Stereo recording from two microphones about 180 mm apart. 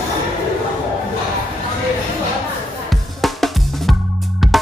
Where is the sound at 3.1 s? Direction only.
Centre (ahead or behind).